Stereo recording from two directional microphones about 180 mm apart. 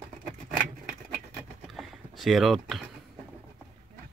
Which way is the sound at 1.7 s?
Centre (ahead or behind).